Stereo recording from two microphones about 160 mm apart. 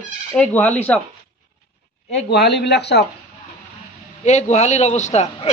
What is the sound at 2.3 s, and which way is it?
Speech, 90° left.